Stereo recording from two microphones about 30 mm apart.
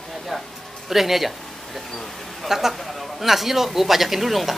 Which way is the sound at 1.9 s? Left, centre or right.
Centre.